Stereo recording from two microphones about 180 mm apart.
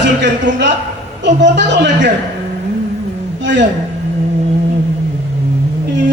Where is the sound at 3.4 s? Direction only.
75° right (ahead or behind).